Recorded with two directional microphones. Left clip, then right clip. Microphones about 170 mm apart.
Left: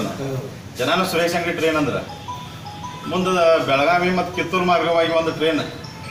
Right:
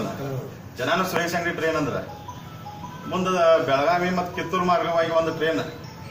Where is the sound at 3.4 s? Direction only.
10° right (ahead or behind).